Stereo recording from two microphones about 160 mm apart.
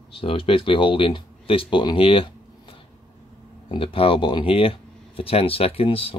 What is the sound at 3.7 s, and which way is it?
Speech, 35° left (ahead or behind).